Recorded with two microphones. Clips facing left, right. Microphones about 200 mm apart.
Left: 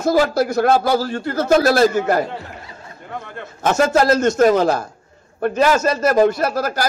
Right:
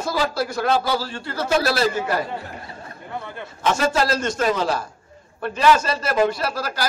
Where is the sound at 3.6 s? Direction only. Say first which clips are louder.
Left 5 dB; 45° left (ahead or behind).